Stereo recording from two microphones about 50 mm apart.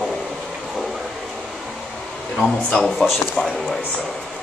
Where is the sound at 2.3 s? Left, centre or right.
Centre.